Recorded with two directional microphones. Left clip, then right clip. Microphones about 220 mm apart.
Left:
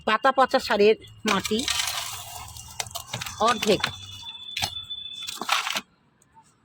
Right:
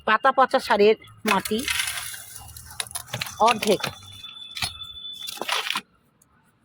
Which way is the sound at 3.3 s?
Centre (ahead or behind).